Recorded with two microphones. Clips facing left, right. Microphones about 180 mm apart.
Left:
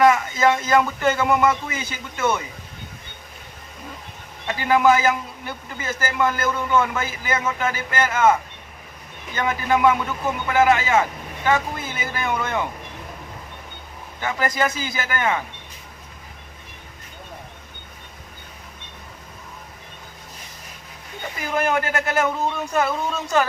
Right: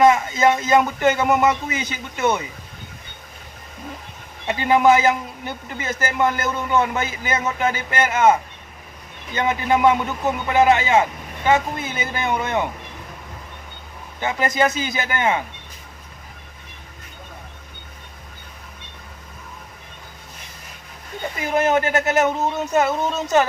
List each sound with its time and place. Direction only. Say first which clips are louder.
0.0 s speech: right 2 dB; 25° right (ahead or behind)
4.4 s speech: right 2 dB; 20° right (ahead or behind)
14.2 s speech: right 3 dB; 20° right (ahead or behind)
21.3 s speech: right 3 dB; 20° right (ahead or behind)